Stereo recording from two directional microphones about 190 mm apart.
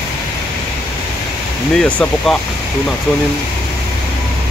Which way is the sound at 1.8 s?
5° left (ahead or behind).